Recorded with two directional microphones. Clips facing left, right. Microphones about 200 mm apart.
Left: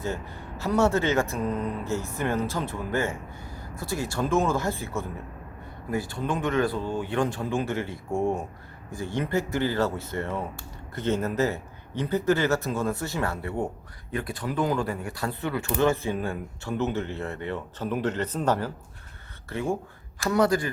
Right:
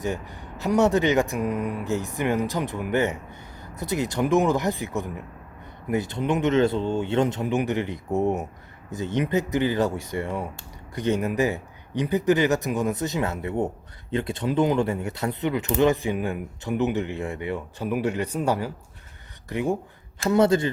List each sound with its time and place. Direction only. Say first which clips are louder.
0.0 s speech: right 3 dB; 15° right (ahead or behind)